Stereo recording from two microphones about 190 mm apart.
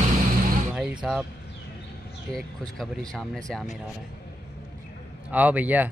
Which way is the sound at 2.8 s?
5° left (ahead or behind).